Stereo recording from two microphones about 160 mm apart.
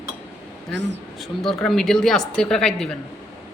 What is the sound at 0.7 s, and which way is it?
Speech, 90° right.